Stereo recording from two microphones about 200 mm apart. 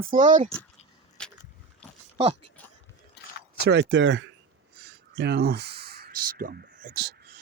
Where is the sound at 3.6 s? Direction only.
60° right (ahead or behind).